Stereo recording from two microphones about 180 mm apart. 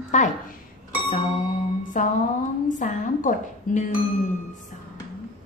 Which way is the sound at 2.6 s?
45° left (ahead or behind).